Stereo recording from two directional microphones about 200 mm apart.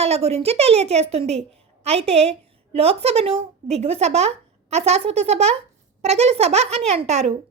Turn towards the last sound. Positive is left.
turn(degrees=-30)  # may be behind; listen again after turning